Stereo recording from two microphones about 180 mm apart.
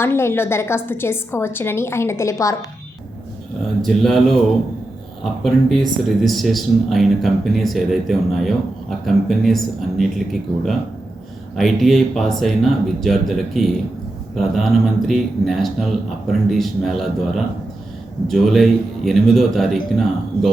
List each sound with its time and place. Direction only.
0.0 s a woman's voice: 15° left (ahead or behind)
3.8 s speech: centre (ahead or behind)